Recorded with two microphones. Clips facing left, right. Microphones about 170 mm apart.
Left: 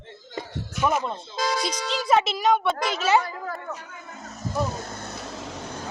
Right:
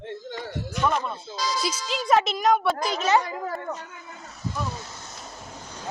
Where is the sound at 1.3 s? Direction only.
55° left (ahead or behind).